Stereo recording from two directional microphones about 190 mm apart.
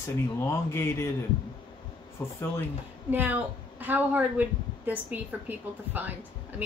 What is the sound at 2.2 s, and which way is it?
Speech, 15° left (ahead or behind).